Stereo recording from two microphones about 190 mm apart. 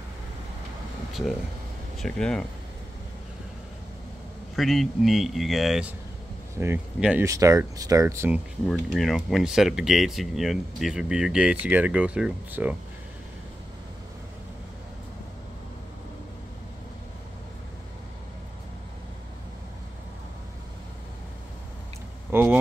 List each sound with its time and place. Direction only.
2.0 s speech: 5° left (ahead or behind)
4.6 s speech: centre (ahead or behind)
8.6 s speech: centre (ahead or behind)
22.3 s speech: 10° right (ahead or behind)